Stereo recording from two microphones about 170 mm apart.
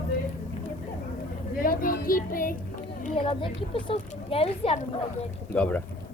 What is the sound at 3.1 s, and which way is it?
Speech, 30° left (ahead or behind).